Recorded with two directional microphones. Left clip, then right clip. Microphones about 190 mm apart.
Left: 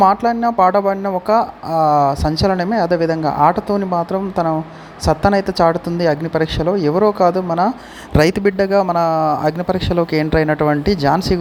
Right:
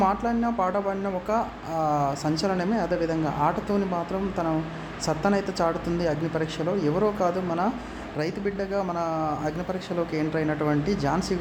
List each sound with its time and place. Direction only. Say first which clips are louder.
0.0 s speech: left 11 dB; 35° left (ahead or behind)
8.1 s speech: left 15 dB; 50° left (ahead or behind)